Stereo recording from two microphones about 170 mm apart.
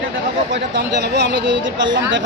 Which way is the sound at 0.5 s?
90° right.